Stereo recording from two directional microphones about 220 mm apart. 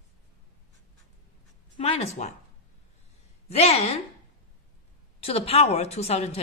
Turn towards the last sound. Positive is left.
turn(degrees=30)  # may be behind; listen again after turning